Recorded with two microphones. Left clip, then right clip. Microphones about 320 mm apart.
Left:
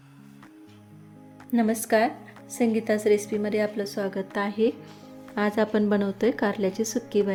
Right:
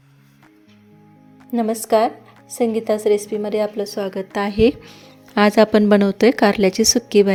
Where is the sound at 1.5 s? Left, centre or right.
Centre.